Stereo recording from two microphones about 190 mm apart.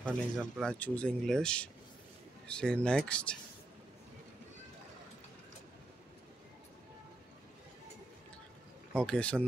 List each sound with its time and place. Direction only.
0.0 s speech: 5° left (ahead or behind)
8.9 s speech: 5° left (ahead or behind)